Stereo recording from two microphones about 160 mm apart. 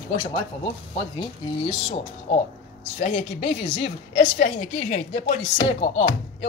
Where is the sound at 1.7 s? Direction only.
35° left (ahead or behind).